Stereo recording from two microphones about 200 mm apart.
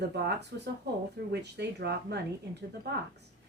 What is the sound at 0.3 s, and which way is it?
Speech, 55° right (ahead or behind).